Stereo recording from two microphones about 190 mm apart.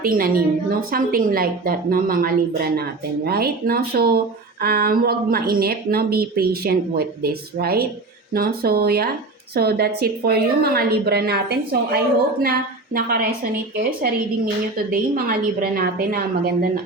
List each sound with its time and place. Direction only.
0.0 s a woman's voice: 50° right (ahead or behind)